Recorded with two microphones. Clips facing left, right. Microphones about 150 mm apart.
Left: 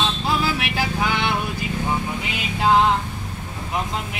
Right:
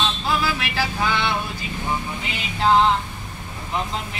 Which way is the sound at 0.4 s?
20° left (ahead or behind).